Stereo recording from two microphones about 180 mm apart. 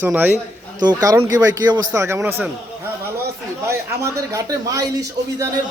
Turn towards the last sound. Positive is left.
turn(degrees=-20)  # may be behind; listen again after turning